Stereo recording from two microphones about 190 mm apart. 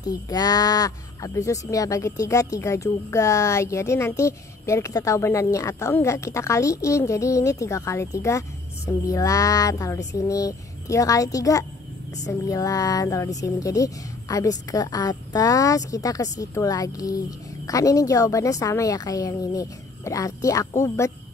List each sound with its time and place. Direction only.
0.0 s speech: 20° left (ahead or behind)